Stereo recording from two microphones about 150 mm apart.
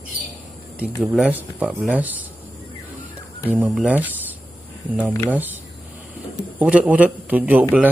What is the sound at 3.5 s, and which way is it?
Speech, 10° right (ahead or behind).